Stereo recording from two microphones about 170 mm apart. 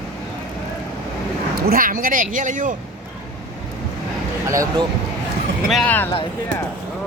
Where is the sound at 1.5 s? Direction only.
60° right (ahead or behind).